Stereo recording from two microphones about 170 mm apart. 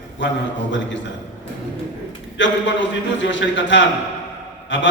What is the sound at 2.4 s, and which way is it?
A man's voice, 90° left.